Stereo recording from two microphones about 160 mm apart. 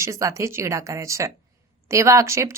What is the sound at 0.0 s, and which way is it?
A woman's voice, 20° right (ahead or behind).